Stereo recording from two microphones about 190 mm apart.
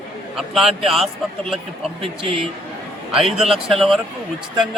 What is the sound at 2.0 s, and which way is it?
Speech, 25° right (ahead or behind).